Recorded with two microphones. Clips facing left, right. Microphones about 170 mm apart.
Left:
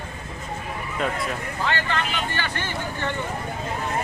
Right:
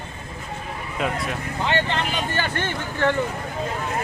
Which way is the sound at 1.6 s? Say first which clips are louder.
Right 3 dB; 20° right (ahead or behind).